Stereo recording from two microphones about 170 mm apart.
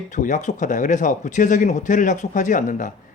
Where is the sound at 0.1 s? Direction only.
45° left (ahead or behind).